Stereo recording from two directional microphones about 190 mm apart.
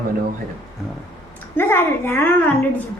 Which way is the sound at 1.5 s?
10° left (ahead or behind).